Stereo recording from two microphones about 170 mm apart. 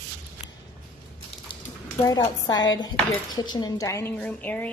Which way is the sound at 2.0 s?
20° left (ahead or behind).